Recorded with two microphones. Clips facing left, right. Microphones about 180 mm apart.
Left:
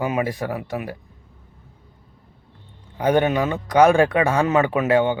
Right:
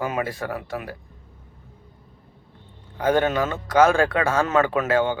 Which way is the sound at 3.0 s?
20° left (ahead or behind).